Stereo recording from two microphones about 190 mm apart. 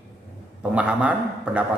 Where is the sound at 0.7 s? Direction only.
5° right (ahead or behind).